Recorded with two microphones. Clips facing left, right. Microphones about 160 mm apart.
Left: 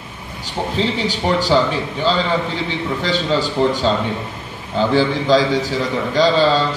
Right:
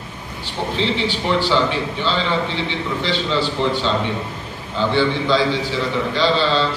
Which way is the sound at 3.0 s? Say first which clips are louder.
Left 2 dB; 45° left (ahead or behind).